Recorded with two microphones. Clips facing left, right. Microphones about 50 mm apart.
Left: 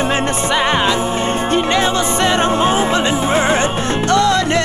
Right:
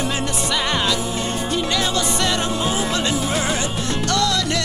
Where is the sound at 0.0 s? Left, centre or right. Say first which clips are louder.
Left 6 dB; left.